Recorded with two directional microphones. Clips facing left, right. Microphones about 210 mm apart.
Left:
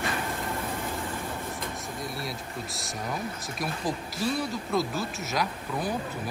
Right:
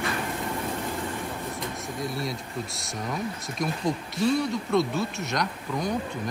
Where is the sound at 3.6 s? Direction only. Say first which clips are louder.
Right 4 dB; centre (ahead or behind).